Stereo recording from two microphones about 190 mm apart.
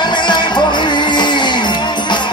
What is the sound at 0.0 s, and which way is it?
Music, 25° left (ahead or behind).